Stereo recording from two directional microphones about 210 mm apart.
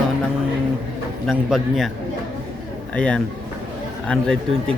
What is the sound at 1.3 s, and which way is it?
Speech, centre (ahead or behind).